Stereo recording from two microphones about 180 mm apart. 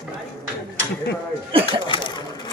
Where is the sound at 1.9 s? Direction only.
25° left (ahead or behind).